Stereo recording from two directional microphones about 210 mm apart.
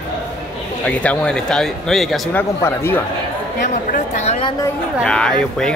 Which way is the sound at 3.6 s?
35° left (ahead or behind).